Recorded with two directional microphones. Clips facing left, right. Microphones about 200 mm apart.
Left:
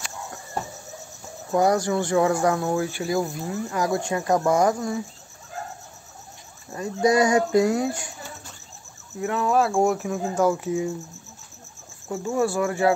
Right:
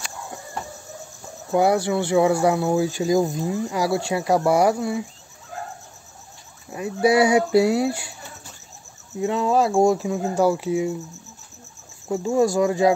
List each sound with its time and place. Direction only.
1.5 s speech: 10° right (ahead or behind)
6.7 s speech: 10° right (ahead or behind)
9.2 s cricket: 20° right (ahead or behind)
10.0 s speech: 15° right (ahead or behind)
12.1 s speech: 15° right (ahead or behind)